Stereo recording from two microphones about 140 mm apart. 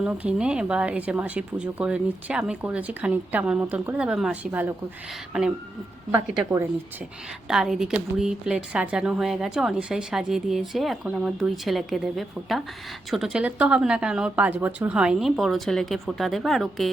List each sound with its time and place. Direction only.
0.0 s speech: 10° right (ahead or behind)
6.1 s speech: 20° right (ahead or behind)
7.4 s a woman's voice: 5° right (ahead or behind)